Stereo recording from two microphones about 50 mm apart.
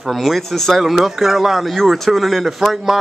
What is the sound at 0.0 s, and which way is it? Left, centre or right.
Speech, centre.